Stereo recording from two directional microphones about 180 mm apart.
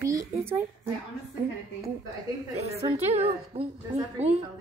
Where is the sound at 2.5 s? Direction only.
35° right (ahead or behind).